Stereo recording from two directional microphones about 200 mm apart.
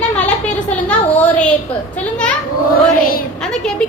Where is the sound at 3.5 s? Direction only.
5° left (ahead or behind).